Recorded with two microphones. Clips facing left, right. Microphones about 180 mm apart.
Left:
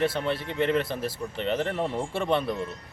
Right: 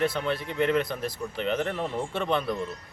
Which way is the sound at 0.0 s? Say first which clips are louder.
Left 1 dB; centre (ahead or behind).